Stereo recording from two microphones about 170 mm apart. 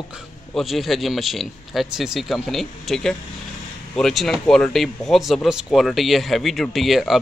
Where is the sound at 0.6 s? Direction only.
Centre (ahead or behind).